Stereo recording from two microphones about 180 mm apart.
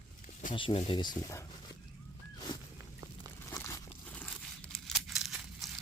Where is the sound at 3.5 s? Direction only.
15° left (ahead or behind).